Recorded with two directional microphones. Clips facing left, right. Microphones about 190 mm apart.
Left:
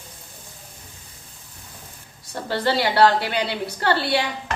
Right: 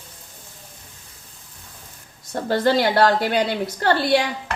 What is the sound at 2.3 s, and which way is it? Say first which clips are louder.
A woman's voice: right 4 dB; 45° right (ahead or behind).